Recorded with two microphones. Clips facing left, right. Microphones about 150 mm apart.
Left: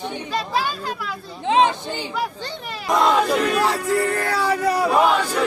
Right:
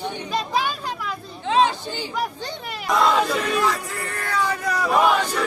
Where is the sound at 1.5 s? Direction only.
20° left (ahead or behind).